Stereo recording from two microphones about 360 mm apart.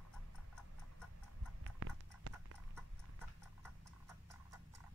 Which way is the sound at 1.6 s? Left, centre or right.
Right.